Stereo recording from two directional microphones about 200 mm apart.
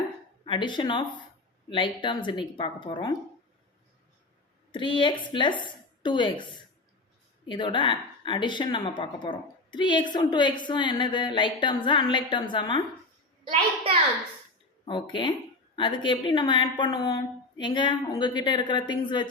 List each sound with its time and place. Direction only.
0.4 s speech: 25° left (ahead or behind)
4.7 s speech: 25° left (ahead or behind)
7.4 s speech: 25° left (ahead or behind)
13.4 s a child's voice: 30° right (ahead or behind)
14.8 s speech: 25° left (ahead or behind)